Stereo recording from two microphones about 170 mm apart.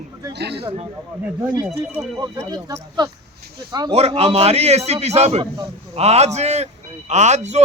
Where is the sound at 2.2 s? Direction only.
20° right (ahead or behind).